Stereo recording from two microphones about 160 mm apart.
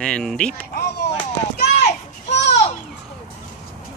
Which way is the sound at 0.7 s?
90° left.